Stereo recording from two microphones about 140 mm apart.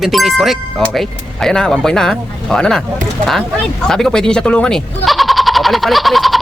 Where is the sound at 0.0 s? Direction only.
Centre (ahead or behind).